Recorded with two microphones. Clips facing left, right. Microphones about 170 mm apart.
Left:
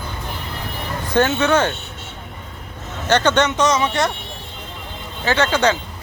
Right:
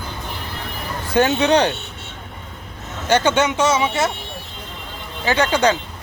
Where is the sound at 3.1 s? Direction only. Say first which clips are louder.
Even; 10° right (ahead or behind).